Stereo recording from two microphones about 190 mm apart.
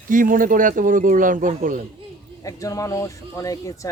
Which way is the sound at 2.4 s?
20° left (ahead or behind).